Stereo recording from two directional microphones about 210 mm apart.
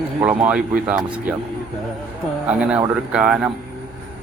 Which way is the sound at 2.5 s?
5° right (ahead or behind).